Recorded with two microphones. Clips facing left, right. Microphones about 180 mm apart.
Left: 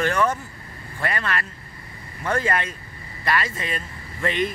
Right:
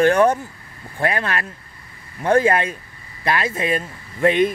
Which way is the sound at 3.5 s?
55° right (ahead or behind).